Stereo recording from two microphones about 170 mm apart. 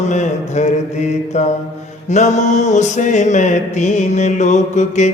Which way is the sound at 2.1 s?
45° left (ahead or behind).